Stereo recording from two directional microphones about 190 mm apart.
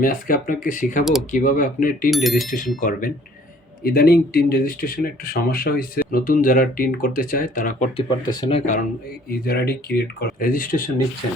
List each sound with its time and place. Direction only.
0.0 s speech: 50° left (ahead or behind)
2.0 s speech: centre (ahead or behind)
2.5 s speech: 45° left (ahead or behind)
3.8 s speech: 55° left (ahead or behind)
7.9 s speech: 25° left (ahead or behind)
9.3 s speech: 55° left (ahead or behind)